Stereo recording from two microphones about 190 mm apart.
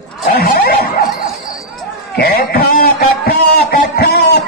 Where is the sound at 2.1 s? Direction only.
55° left (ahead or behind).